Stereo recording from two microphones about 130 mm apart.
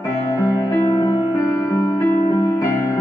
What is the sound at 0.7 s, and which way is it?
Music, 25° left (ahead or behind).